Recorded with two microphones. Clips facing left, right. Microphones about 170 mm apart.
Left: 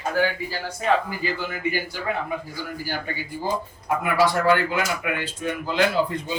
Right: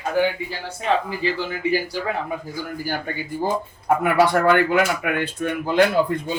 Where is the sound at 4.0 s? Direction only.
55° right (ahead or behind).